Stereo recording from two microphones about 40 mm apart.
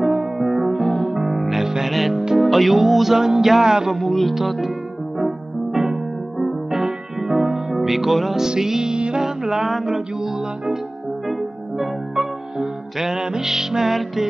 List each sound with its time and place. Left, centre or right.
0.0 s music: centre
0.4 s music: centre
1.1 s music: centre
3.9 s music: centre
8.5 s music: centre
9.2 s music: centre
11.8 s music: centre